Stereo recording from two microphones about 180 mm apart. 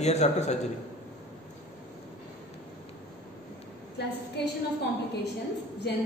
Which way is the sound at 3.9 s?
65° left (ahead or behind).